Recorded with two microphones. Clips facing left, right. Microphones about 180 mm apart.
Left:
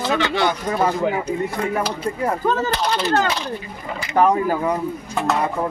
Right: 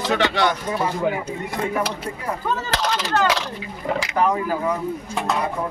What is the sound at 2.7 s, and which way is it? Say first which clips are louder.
Speech: left 2 dB; 90° right.